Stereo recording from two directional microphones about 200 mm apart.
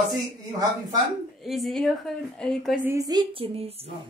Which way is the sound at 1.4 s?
Centre (ahead or behind).